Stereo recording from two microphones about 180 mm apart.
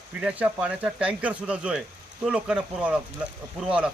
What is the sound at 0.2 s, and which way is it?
Speech, 5° right (ahead or behind).